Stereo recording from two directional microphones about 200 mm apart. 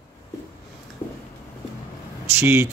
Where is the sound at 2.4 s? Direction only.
15° right (ahead or behind).